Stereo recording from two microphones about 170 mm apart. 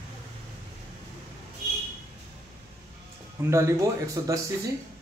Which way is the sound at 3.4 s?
15° right (ahead or behind).